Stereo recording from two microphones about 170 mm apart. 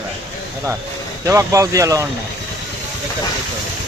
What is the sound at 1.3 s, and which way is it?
Speech, 20° right (ahead or behind).